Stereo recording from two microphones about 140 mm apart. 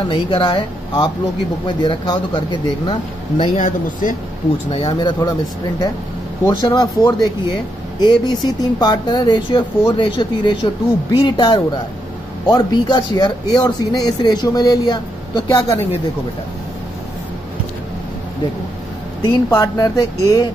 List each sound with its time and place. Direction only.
0.1 s speech: 35° left (ahead or behind)
3.5 s speech: 65° left (ahead or behind)
4.6 s speech: 40° left (ahead or behind)
6.4 s speech: 25° left (ahead or behind)
19.3 s speech: 25° left (ahead or behind)